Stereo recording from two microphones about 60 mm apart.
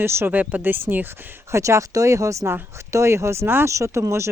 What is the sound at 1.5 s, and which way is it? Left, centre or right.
Speech, right.